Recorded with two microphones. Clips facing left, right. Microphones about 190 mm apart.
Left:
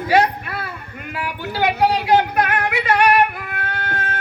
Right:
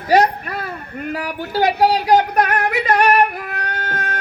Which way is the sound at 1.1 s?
40° right (ahead or behind).